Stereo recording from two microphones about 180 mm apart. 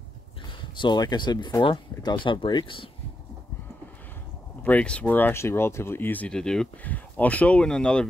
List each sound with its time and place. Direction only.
0.5 s speech: 25° left (ahead or behind)
4.6 s speech: 5° left (ahead or behind)